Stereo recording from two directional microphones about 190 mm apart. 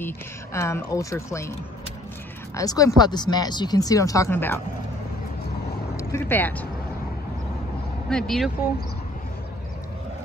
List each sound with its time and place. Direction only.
0.0 s speech: 15° left (ahead or behind)
2.5 s speech: 20° left (ahead or behind)
5.9 s speech: 10° left (ahead or behind)
8.1 s speech: 5° left (ahead or behind)